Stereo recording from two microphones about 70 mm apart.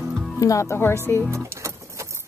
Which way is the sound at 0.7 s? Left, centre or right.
Left.